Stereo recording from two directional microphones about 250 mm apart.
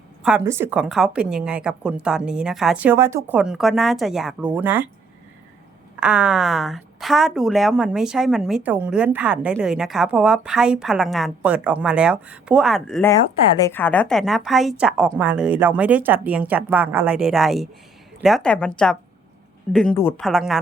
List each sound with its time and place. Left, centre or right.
0.2 s a woman's voice: centre
6.0 s a woman's voice: centre